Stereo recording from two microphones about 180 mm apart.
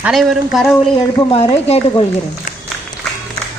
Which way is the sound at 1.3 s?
35° left (ahead or behind).